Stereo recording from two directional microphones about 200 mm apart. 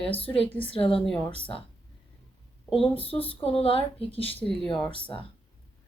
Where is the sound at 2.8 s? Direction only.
30° left (ahead or behind).